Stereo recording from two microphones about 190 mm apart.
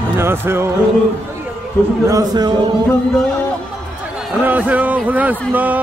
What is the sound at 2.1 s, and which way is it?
Speech, 20° right (ahead or behind).